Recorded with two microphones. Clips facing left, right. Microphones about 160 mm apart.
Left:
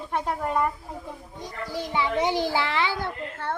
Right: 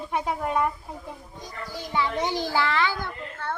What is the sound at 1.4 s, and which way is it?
A child's voice, 30° left (ahead or behind).